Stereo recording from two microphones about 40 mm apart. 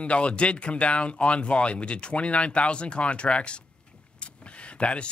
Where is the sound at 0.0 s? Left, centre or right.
Left.